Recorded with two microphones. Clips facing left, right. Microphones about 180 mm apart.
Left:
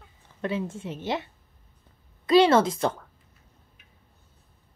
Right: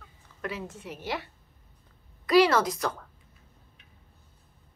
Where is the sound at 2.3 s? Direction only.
25° left (ahead or behind).